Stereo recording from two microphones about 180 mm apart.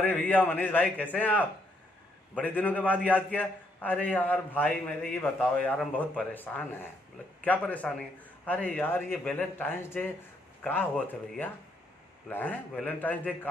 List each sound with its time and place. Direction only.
0.0 s a man's voice: 10° left (ahead or behind)
12.3 s a man's voice: 10° left (ahead or behind)